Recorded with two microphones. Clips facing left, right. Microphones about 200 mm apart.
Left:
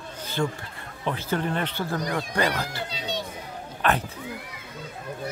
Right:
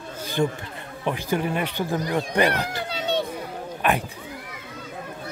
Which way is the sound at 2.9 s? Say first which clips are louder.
Right 9 dB; 60° right (ahead or behind).